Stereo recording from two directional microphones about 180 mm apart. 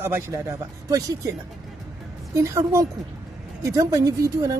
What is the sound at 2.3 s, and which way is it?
A man's voice, 15° right (ahead or behind).